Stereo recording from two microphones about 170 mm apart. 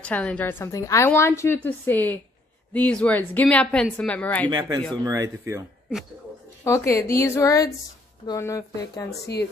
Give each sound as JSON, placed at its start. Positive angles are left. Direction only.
{"t": 0.0, "sound": "a woman's voice", "side_deg": 5}
{"t": 4.5, "sound": "speech", "side_deg": -25}
{"t": 6.6, "sound": "a woman's voice", "side_deg": 15}
{"t": 9.2, "sound": "speech", "side_deg": 75}